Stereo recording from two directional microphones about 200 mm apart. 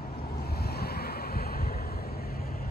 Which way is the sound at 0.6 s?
50° left (ahead or behind).